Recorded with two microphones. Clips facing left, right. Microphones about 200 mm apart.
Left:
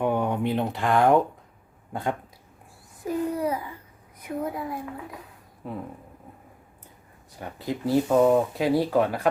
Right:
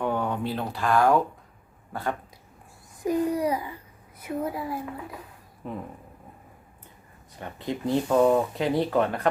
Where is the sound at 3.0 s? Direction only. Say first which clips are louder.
Right 2 dB; 15° right (ahead or behind).